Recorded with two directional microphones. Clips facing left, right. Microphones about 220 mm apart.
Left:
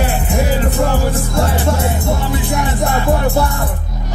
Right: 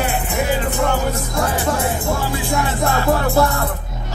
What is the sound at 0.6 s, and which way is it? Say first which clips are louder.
Music: left 3 dB; 30° left (ahead or behind).